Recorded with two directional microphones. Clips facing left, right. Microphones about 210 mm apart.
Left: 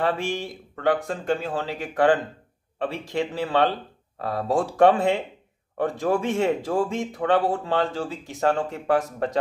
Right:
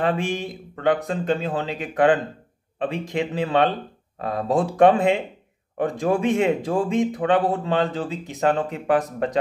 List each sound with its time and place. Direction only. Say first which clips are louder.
0.0 s speech: right 2 dB; 20° right (ahead or behind)